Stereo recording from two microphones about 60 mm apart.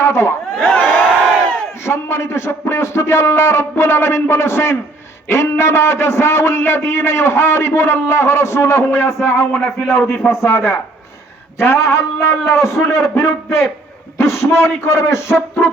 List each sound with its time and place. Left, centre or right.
0.0 s speech: left
0.8 s crowd: centre
1.8 s a man's voice: left